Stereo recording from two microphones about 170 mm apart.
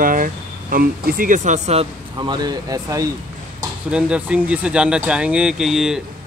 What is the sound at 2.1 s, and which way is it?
Speech, 25° right (ahead or behind).